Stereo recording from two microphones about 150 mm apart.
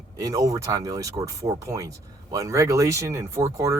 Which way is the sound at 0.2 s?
25° right (ahead or behind).